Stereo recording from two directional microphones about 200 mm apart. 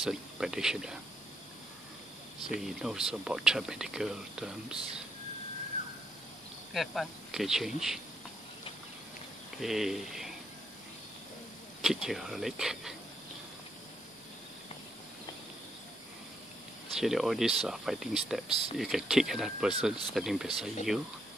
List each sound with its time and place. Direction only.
0.0 s speech: centre (ahead or behind)
2.6 s speech: centre (ahead or behind)
6.7 s speech: centre (ahead or behind)
9.6 s speech: centre (ahead or behind)
11.8 s speech: centre (ahead or behind)
16.9 s speech: centre (ahead or behind)